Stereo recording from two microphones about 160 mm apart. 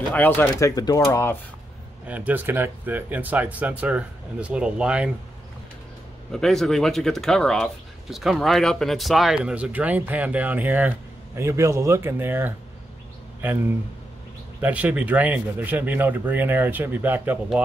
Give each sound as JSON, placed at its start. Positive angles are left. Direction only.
{"t": 0.1, "sound": "speech", "side_deg": 10}
{"t": 2.0, "sound": "speech", "side_deg": -10}
{"t": 6.3, "sound": "speech", "side_deg": 0}
{"t": 14.6, "sound": "speech", "side_deg": -10}